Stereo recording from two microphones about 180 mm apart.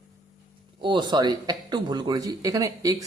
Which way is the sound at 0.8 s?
25° right (ahead or behind).